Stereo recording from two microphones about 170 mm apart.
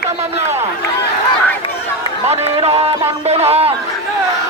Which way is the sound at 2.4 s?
35° right (ahead or behind).